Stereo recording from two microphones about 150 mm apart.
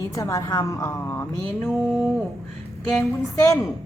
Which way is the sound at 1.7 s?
5° right (ahead or behind).